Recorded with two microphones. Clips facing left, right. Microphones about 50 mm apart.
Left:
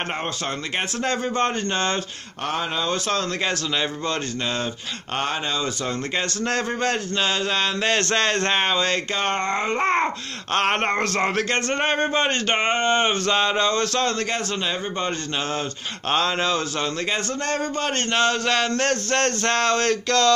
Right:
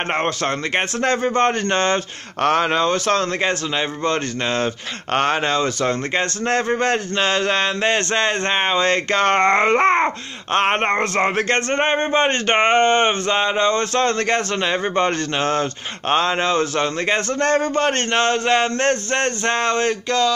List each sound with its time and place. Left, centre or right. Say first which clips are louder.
0.7 s a man's voice: right 4 dB; right
6.4 s speech: right 5 dB; right
9.1 s a man's voice: right 8 dB; right
9.8 s speech: right 5 dB; right
16.1 s speech: right 4 dB; right; by 20.3 s centre